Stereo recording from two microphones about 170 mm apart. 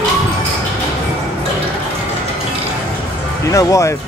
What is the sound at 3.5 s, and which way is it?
Speech, 20° left (ahead or behind).